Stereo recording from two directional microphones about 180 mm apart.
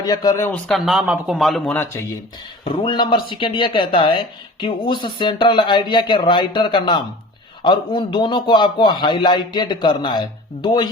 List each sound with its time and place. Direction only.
0.0 s speech: 20° left (ahead or behind)
0.7 s speech: centre (ahead or behind)
2.8 s speech: 25° left (ahead or behind)